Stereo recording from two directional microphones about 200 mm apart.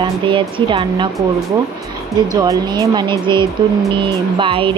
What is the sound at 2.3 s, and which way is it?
Speech, 20° right (ahead or behind).